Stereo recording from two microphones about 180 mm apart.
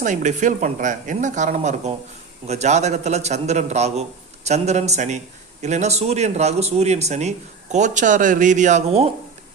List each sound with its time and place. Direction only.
0.0 s speech: 45° right (ahead or behind)